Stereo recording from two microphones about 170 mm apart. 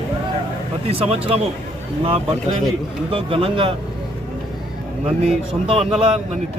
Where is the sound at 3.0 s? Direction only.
30° right (ahead or behind).